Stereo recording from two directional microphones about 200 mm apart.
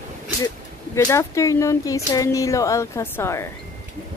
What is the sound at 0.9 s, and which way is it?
Speech, 15° left (ahead or behind).